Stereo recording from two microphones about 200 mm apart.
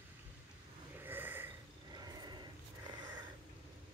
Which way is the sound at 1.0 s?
10° right (ahead or behind).